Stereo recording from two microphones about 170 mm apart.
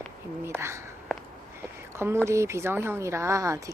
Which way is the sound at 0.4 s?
15° right (ahead or behind).